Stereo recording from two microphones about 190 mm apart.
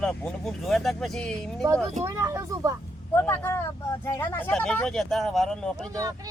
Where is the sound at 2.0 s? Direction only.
15° right (ahead or behind).